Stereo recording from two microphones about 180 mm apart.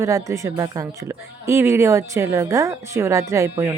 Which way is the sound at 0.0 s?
15° right (ahead or behind).